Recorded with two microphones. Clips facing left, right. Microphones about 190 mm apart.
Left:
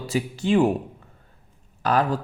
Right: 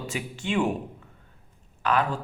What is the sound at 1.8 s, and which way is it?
Speech, 35° left (ahead or behind).